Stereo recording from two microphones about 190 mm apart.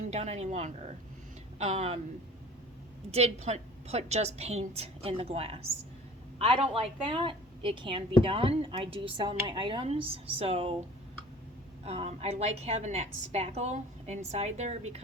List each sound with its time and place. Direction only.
0.1 s a woman's voice: 35° right (ahead or behind)
3.1 s a woman's voice: 35° right (ahead or behind)
11.9 s a woman's voice: 35° right (ahead or behind)